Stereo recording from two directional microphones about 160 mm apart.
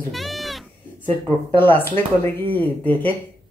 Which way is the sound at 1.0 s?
10° left (ahead or behind).